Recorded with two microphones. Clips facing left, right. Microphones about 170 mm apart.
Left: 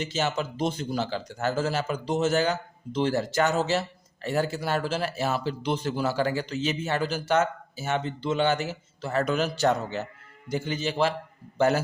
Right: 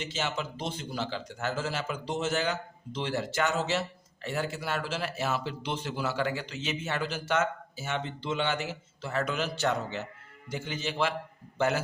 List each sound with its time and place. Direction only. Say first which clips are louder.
0.0 s a man's voice: left 5 dB; 40° left (ahead or behind)